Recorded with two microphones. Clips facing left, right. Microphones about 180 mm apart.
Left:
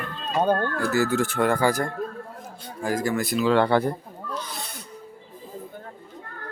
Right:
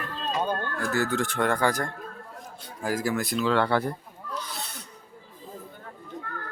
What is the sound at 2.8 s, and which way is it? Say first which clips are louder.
Speech: left 2 dB; 5° right (ahead or behind).